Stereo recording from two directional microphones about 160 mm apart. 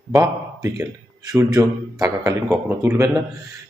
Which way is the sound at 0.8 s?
20° right (ahead or behind).